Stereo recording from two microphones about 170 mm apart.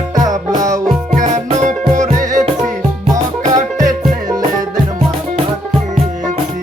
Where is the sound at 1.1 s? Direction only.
45° right (ahead or behind).